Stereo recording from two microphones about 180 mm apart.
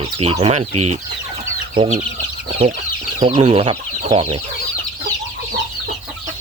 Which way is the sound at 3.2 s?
30° right (ahead or behind).